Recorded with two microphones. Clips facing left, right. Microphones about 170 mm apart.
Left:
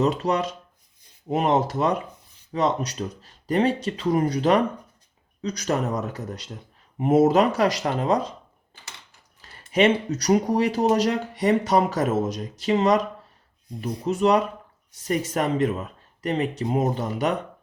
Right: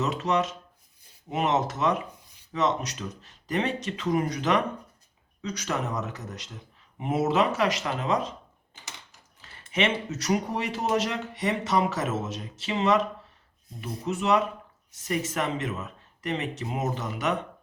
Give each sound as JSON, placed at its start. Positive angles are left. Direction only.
{"t": 0.0, "sound": "speech", "side_deg": 35}
{"t": 9.4, "sound": "speech", "side_deg": 35}
{"t": 14.0, "sound": "speech", "side_deg": 35}